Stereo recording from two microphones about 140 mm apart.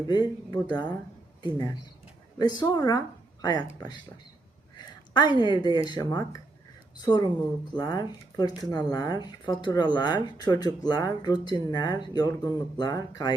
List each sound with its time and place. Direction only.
0.1 s speech: 30° left (ahead or behind)
4.8 s a sound: 30° left (ahead or behind)
5.4 s speech: 30° left (ahead or behind)